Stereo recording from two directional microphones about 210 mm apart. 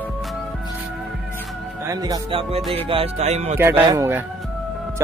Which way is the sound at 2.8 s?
30° right (ahead or behind).